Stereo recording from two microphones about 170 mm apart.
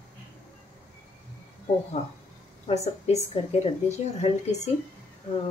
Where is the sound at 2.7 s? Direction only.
40° left (ahead or behind).